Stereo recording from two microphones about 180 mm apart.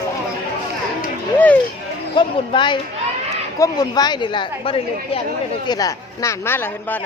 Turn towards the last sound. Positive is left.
turn(degrees=10)  # may be behind; listen again after turning